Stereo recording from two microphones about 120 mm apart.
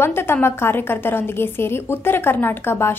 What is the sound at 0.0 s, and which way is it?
A woman's voice, 20° left (ahead or behind).